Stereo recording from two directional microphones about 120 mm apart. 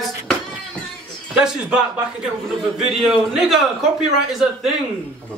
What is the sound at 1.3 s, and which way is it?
A man's voice, 5° right (ahead or behind).